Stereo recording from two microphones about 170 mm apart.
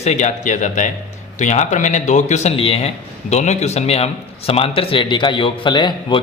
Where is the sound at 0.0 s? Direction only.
40° left (ahead or behind).